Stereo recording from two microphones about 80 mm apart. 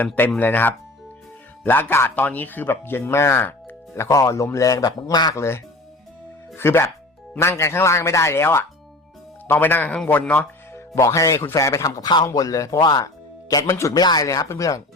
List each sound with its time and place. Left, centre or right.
0.3 s speech: left
5.3 s speech: left; by 10.5 s centre
10.7 s speech: left
12.8 s speech: left
13.7 s speech: left
13.9 s speech: left